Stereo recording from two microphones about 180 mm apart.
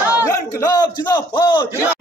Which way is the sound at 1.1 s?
25° left (ahead or behind).